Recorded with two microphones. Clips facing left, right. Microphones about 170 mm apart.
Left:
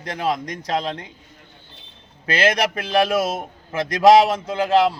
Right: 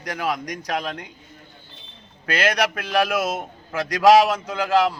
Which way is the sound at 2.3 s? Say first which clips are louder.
Left 2 dB; 25° left (ahead or behind).